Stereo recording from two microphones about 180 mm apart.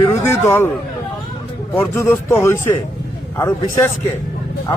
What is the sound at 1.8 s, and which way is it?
Speech, 10° left (ahead or behind).